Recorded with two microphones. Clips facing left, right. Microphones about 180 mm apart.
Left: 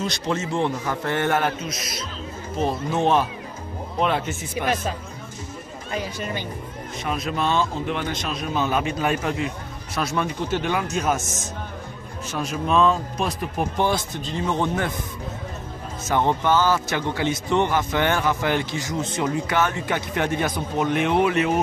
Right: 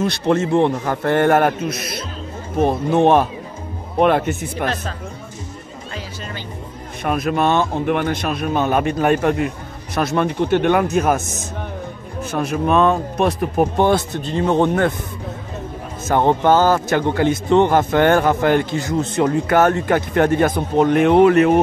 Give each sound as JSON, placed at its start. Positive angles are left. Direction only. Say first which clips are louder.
{"t": 0.0, "sound": "speech", "louder": "right 8 dB", "side_deg": -60}
{"t": 5.9, "sound": "speech", "louder": "left 4 dB", "side_deg": 15}
{"t": 7.0, "sound": "speech", "louder": "right 7 dB", "side_deg": -55}
{"t": 16.1, "sound": "speech", "louder": "right 6 dB", "side_deg": -50}